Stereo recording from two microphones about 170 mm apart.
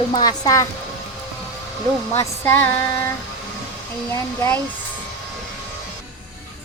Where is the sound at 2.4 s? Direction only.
10° left (ahead or behind).